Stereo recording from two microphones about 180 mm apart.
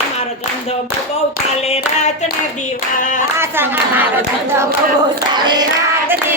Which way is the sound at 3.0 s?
45° left (ahead or behind).